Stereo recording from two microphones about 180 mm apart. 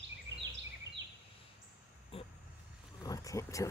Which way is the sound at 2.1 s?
35° left (ahead or behind).